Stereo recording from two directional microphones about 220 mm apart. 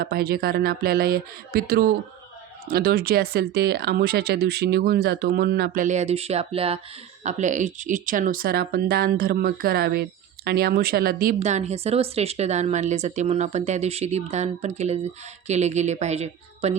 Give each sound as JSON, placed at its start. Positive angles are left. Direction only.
{"t": 0.0, "sound": "a woman's voice", "side_deg": -45}